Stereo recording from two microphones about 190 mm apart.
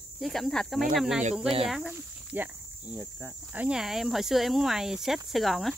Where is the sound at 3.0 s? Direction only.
10° left (ahead or behind).